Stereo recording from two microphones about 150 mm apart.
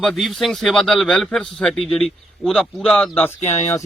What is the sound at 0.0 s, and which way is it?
Speech, centre (ahead or behind).